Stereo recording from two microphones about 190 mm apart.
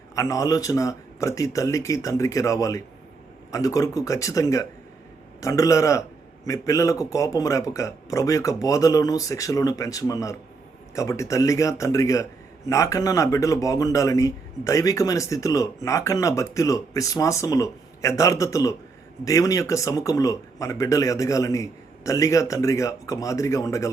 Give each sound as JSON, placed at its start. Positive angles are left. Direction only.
{"t": 0.2, "sound": "a man's voice", "side_deg": 15}